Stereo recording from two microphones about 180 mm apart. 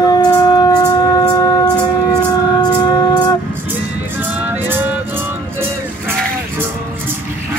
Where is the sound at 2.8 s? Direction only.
20° left (ahead or behind).